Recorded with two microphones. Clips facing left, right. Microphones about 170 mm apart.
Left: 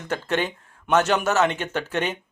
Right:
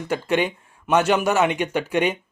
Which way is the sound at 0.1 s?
10° right (ahead or behind).